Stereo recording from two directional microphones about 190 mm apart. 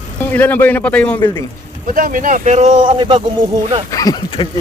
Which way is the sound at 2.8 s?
25° right (ahead or behind).